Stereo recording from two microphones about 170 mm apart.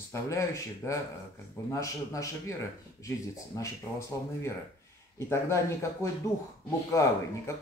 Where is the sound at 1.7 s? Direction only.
20° left (ahead or behind).